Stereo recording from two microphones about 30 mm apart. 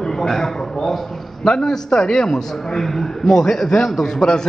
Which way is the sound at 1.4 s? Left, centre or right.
Left.